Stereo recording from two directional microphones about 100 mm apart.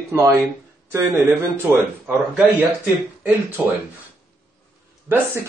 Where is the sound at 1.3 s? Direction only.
20° right (ahead or behind).